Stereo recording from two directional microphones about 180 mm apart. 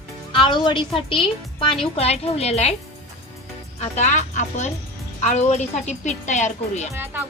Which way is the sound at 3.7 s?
40° left (ahead or behind).